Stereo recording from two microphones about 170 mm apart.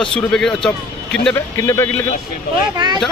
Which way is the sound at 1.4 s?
15° left (ahead or behind).